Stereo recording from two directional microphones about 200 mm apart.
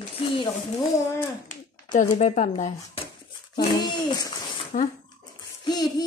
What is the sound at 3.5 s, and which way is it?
A child's voice, 25° left (ahead or behind).